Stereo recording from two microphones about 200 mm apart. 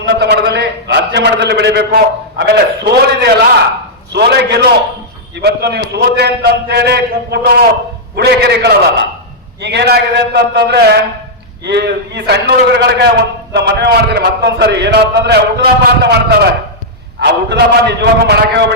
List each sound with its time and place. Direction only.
0.0 s a man's voice: 55° right (ahead or behind)